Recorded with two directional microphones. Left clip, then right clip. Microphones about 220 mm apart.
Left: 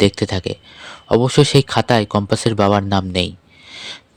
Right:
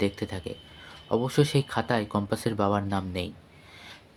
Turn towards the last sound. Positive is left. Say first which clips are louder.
# left 15 dB
turn(degrees=40)  # may be behind; listen again after turning